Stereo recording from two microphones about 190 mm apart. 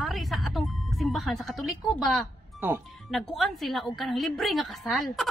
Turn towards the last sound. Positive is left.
turn(degrees=0)  # may be behind; listen again after turning